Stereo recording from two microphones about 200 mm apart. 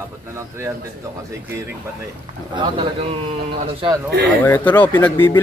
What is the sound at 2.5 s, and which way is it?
Speech, 25° right (ahead or behind).